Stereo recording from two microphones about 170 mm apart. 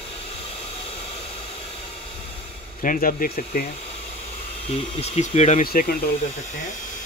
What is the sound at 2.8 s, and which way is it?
Speech, 50° left (ahead or behind).